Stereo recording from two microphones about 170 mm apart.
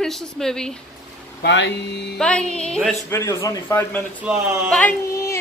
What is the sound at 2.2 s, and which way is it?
Speech, 5° left (ahead or behind).